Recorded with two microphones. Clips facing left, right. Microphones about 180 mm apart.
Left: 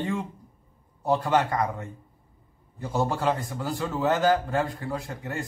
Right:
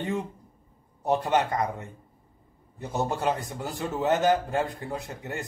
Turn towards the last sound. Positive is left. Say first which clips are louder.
# left 2 dB
turn(degrees=-20)  # may be behind; listen again after turning